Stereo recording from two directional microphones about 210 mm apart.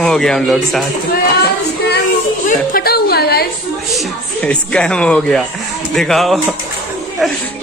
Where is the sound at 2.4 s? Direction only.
45° left (ahead or behind).